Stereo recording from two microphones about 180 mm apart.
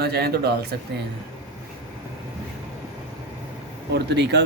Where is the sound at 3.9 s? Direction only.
70° right (ahead or behind).